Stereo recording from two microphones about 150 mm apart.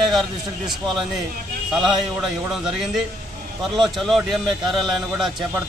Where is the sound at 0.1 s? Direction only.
Centre (ahead or behind).